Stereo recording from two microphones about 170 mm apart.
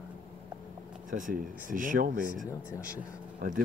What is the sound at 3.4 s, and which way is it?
Speech, 60° right (ahead or behind).